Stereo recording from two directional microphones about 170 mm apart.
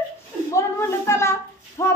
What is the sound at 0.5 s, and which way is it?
A man's voice, 15° left (ahead or behind).